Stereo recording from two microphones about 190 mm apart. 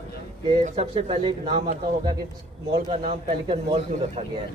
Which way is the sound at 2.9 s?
35° right (ahead or behind).